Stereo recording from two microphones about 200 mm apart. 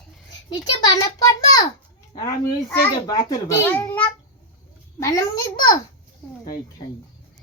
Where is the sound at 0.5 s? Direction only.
20° left (ahead or behind).